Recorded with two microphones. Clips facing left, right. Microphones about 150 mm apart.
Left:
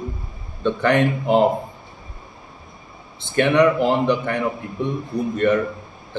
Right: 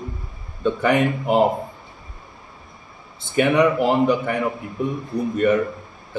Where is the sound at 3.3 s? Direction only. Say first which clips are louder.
Left 1 dB; 5° right (ahead or behind).